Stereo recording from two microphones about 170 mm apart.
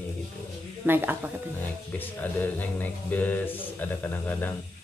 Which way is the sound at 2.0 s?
10° left (ahead or behind).